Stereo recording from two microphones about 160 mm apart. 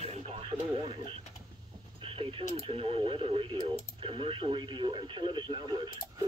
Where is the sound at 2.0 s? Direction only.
35° right (ahead or behind).